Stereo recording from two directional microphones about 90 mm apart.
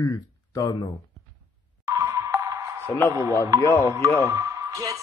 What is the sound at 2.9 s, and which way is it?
Speech, 25° left (ahead or behind).